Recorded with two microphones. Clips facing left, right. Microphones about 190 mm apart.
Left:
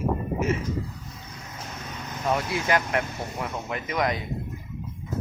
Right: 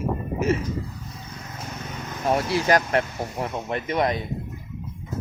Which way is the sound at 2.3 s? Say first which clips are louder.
Right 4 dB; 30° right (ahead or behind).